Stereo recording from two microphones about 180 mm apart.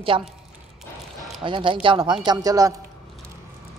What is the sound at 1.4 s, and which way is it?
A woman's voice, 25° right (ahead or behind).